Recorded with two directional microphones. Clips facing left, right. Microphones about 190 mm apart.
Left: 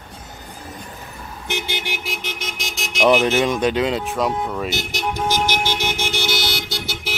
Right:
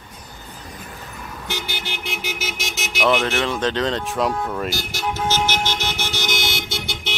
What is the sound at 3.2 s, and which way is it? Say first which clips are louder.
Speech: left 4 dB; 15° left (ahead or behind).